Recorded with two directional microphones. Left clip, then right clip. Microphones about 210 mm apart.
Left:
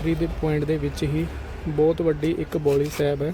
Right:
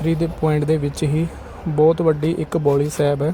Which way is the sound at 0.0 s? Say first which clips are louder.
Right 4 dB; 20° right (ahead or behind).